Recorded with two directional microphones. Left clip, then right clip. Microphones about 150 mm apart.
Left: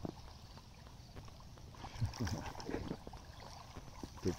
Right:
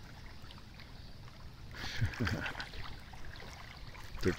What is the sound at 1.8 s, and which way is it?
Boat, 10° right (ahead or behind).